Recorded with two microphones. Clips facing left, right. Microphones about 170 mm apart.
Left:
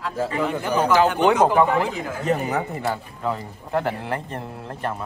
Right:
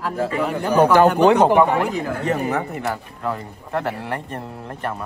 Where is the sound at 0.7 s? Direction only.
60° right (ahead or behind).